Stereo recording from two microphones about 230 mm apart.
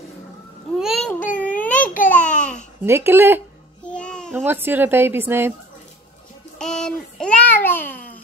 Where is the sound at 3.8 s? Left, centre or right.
Centre.